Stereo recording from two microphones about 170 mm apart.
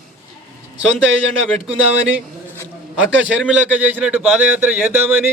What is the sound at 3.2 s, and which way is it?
A man's voice, 5° right (ahead or behind).